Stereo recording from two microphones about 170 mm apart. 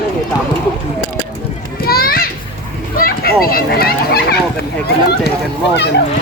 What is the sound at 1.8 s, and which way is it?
Children playing, 60° left (ahead or behind).